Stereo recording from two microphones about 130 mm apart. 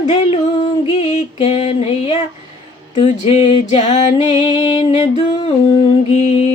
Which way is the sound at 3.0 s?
45° left (ahead or behind).